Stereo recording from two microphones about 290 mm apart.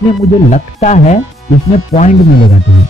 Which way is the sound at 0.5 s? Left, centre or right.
Left.